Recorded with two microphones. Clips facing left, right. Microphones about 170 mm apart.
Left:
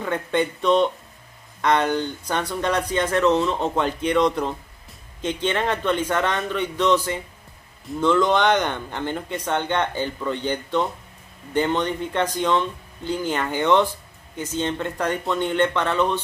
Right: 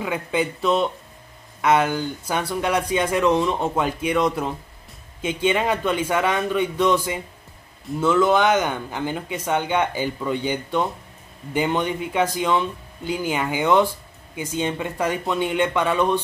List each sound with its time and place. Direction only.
0.0 s speech: 5° right (ahead or behind)